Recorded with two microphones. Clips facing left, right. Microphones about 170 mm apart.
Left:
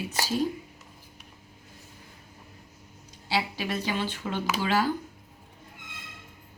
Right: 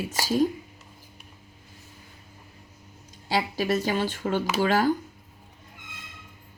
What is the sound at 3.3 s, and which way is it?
Speech, 45° right (ahead or behind).